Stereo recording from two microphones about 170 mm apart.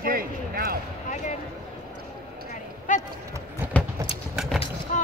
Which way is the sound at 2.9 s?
50° left (ahead or behind).